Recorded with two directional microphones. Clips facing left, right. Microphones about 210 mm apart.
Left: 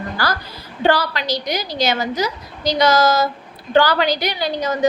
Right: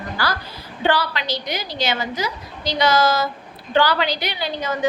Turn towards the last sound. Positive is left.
turn(degrees=40)  # may be behind; listen again after turning